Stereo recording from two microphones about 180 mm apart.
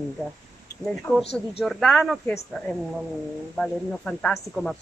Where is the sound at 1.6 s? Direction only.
Centre (ahead or behind).